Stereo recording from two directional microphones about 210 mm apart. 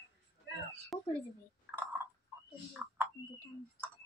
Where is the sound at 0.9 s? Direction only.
Centre (ahead or behind).